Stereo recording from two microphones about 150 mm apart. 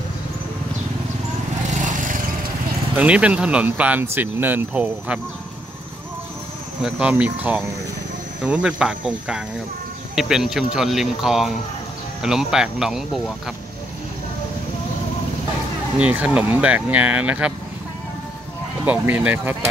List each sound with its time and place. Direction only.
1.7 s lawn mower: 55° right (ahead or behind)
3.0 s speech: 10° right (ahead or behind)
6.8 s speech: 10° right (ahead or behind)
16.0 s speech: 10° right (ahead or behind)
18.9 s speech: 10° right (ahead or behind)